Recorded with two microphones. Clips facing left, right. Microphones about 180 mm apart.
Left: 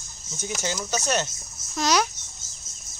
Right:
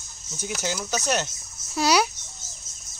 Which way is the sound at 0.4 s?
10° right (ahead or behind).